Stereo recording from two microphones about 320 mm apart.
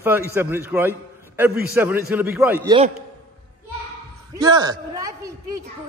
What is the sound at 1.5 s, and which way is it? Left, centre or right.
Speech, right.